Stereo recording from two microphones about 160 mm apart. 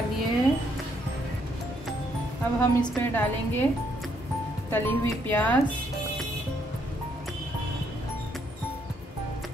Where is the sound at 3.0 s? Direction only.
10° left (ahead or behind).